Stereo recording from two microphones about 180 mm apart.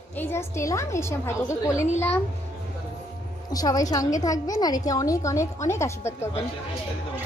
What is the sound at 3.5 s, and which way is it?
A woman's voice, 20° left (ahead or behind).